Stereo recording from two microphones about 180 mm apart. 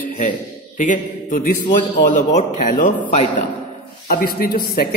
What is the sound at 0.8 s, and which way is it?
Mantra, 45° left (ahead or behind).